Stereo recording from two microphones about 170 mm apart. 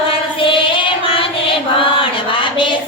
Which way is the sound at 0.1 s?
30° left (ahead or behind).